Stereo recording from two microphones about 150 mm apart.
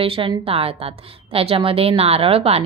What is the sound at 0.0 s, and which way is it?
A woman's voice, 40° right (ahead or behind).